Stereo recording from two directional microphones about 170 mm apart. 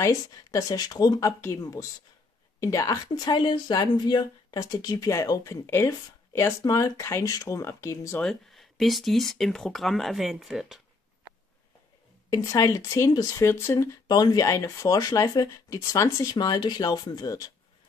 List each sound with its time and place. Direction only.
0.0 s a woman's voice: 20° left (ahead or behind)
8.2 s speech: centre (ahead or behind)
12.3 s a woman's voice: 20° left (ahead or behind)